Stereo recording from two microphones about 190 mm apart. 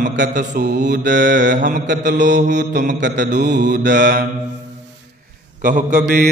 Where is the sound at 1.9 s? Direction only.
65° right (ahead or behind).